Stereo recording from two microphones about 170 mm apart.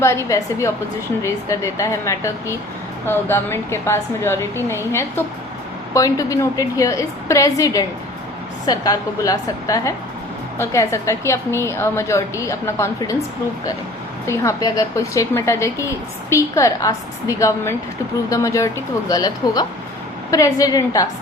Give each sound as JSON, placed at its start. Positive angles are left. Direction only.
{"t": 0.0, "sound": "a woman's voice", "side_deg": 15}
{"t": 14.3, "sound": "a woman's voice", "side_deg": 20}